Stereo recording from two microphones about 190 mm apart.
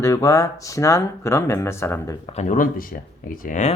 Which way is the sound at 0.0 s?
15° left (ahead or behind).